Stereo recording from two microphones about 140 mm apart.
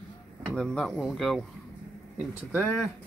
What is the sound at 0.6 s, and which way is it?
Speech, 5° left (ahead or behind).